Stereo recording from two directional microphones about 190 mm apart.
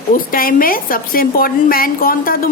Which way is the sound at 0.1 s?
50° left (ahead or behind).